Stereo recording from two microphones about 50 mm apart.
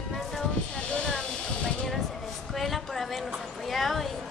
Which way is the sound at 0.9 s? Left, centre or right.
Centre.